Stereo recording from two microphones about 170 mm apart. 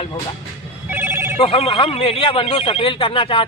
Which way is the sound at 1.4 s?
35° left (ahead or behind).